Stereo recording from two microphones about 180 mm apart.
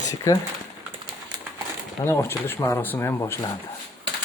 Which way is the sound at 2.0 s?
15° left (ahead or behind).